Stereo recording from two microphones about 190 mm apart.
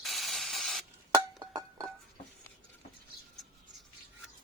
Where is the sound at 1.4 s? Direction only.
20° right (ahead or behind).